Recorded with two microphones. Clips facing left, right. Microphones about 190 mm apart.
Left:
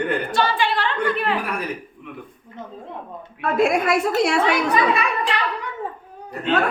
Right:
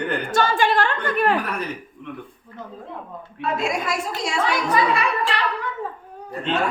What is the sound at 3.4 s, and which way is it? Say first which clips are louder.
A woman's voice: left 6 dB; 55° left (ahead or behind).